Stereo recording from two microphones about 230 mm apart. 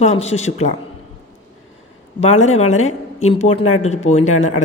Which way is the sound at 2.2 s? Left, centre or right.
Left.